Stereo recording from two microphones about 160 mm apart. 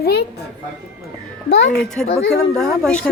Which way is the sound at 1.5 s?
90° left.